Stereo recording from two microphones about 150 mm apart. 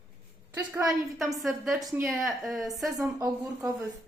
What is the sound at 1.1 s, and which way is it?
Speech, centre (ahead or behind).